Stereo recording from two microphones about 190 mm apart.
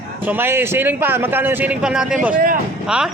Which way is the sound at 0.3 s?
10° right (ahead or behind).